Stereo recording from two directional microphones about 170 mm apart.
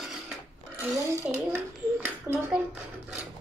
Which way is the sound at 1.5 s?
10° right (ahead or behind).